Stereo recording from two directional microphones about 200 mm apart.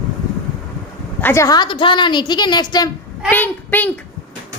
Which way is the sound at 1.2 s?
15° left (ahead or behind).